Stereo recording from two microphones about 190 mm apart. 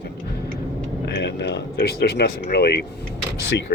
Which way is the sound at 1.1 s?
65° left (ahead or behind).